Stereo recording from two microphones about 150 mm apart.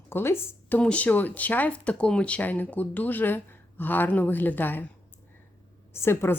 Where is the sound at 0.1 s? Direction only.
15° left (ahead or behind).